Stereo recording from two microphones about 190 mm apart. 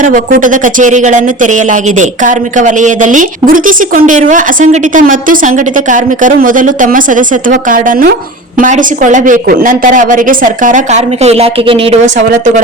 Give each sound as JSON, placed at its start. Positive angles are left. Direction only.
{"t": 0.0, "sound": "speech", "side_deg": -45}